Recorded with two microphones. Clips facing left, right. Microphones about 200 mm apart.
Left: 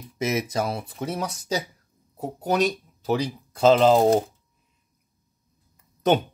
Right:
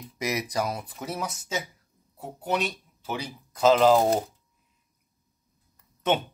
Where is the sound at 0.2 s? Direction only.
25° left (ahead or behind).